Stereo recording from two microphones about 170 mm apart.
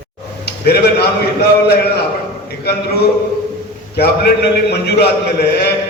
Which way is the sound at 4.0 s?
70° left (ahead or behind).